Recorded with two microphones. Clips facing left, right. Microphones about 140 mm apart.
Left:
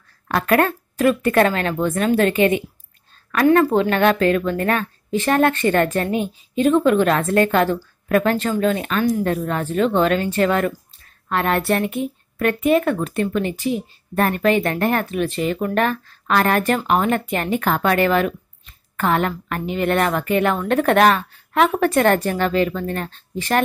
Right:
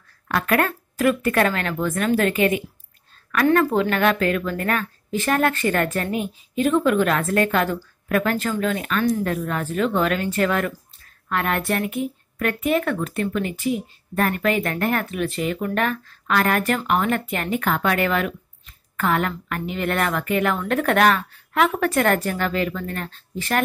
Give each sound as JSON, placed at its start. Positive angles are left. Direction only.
{"t": 0.3, "sound": "a woman's voice", "side_deg": 30}